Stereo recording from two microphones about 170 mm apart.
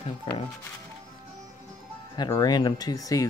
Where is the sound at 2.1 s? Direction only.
25° left (ahead or behind).